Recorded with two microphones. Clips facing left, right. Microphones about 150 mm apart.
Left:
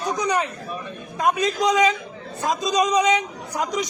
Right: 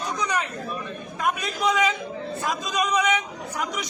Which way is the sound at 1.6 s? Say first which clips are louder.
Left 4 dB; 20° left (ahead or behind).